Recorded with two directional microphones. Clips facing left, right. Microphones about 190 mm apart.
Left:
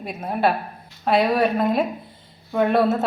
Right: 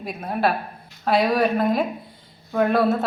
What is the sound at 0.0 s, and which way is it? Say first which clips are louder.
Speech: left 1 dB; 5° left (ahead or behind).